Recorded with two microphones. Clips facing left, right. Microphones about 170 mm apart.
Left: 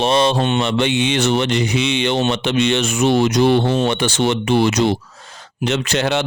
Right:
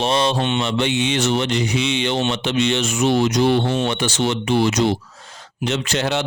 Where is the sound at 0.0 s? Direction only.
60° left (ahead or behind).